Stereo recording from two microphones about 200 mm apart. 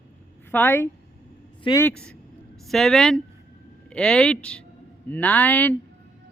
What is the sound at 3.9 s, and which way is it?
Speech, 5° left (ahead or behind).